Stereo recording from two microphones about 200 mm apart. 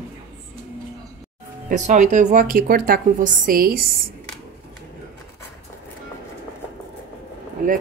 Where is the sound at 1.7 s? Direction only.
40° right (ahead or behind).